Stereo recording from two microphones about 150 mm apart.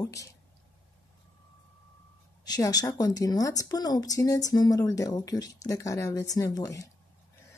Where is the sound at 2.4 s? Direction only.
25° left (ahead or behind).